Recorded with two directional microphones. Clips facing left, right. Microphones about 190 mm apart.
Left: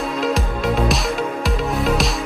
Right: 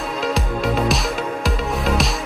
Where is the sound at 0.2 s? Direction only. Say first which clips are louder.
Even; centre (ahead or behind).